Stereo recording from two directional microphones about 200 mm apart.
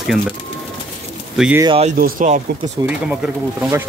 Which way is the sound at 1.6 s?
30° right (ahead or behind).